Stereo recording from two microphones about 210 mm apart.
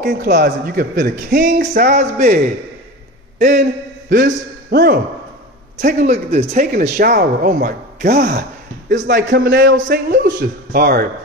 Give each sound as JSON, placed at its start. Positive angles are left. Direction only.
{"t": 0.1, "sound": "speech", "side_deg": -40}
{"t": 0.4, "sound": "a man's voice", "side_deg": -50}
{"t": 4.1, "sound": "a man's voice", "side_deg": -45}
{"t": 9.8, "sound": "speech", "side_deg": -40}